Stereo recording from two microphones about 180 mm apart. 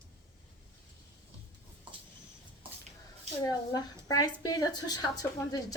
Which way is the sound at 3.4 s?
20° left (ahead or behind).